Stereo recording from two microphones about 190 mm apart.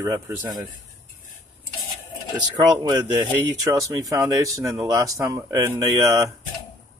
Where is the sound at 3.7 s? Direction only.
20° right (ahead or behind).